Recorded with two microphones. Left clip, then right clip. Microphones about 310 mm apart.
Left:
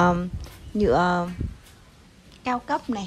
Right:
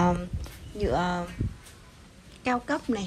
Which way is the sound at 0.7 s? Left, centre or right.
Centre.